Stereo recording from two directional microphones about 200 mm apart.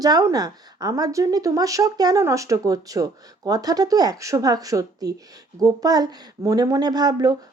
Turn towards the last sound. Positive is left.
turn(degrees=-20)  # may be behind; listen again after turning